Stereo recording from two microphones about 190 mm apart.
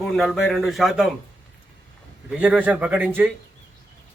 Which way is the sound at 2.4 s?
5° right (ahead or behind).